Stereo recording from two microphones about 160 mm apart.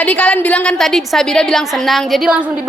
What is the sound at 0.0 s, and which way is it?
A woman's voice, 5° left (ahead or behind).